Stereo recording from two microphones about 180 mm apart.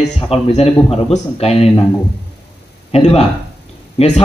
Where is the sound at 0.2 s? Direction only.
35° left (ahead or behind).